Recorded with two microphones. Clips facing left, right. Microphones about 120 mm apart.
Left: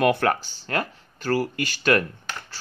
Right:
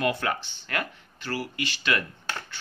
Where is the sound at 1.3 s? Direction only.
45° left (ahead or behind).